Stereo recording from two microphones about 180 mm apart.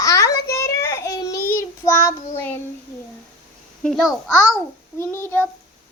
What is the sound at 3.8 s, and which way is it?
Speech, centre (ahead or behind).